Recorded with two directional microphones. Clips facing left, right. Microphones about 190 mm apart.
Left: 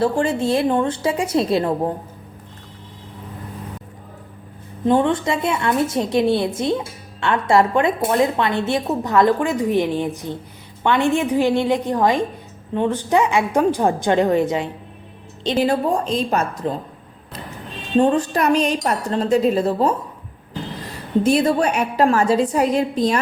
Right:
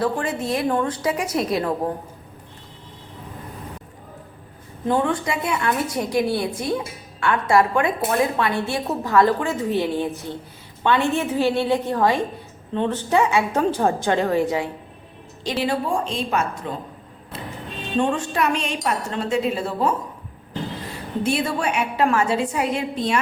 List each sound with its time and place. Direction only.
0.0 s a woman's voice: 30° left (ahead or behind)
4.9 s a woman's voice: 25° left (ahead or behind)
15.5 s a woman's voice: 40° left (ahead or behind)
17.9 s a woman's voice: 35° left (ahead or behind)
21.2 s a woman's voice: 40° left (ahead or behind)